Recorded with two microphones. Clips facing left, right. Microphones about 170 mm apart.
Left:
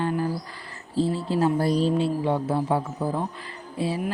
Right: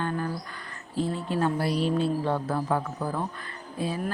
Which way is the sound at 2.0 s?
25° left (ahead or behind).